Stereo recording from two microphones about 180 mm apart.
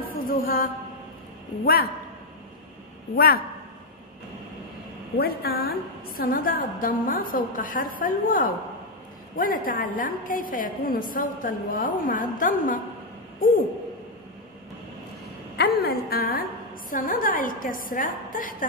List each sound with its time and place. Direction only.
0.0 s a sound: 55° left (ahead or behind)
1.6 s a man's voice: 55° left (ahead or behind)
5.1 s a woman's voice: 60° left (ahead or behind)
15.5 s a woman's voice: 65° left (ahead or behind)